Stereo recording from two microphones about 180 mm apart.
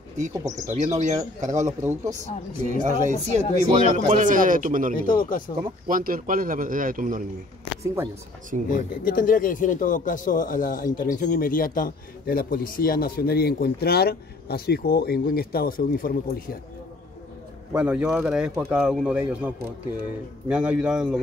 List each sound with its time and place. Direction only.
0.3 s a man's voice: 20° right (ahead or behind)
0.7 s speech: 40° right (ahead or behind)
1.7 s speech: 20° right (ahead or behind)
2.7 s speech: 40° right (ahead or behind)
5.0 s speech: 50° left (ahead or behind)
5.6 s speech: 50° right (ahead or behind)
8.6 s a man's voice: 50° left (ahead or behind)
17.7 s a man's voice: 5° right (ahead or behind)